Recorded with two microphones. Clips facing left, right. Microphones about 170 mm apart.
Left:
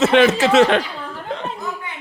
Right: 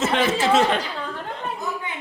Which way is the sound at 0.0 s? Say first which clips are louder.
Left 7 dB; 75° left (ahead or behind).